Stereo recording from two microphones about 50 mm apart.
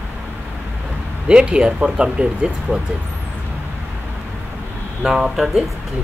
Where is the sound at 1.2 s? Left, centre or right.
Right.